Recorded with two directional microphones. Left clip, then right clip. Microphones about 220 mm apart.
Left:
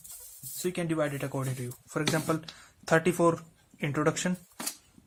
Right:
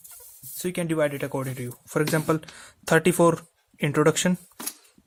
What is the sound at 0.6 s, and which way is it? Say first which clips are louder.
Speech: right 5 dB; 40° right (ahead or behind).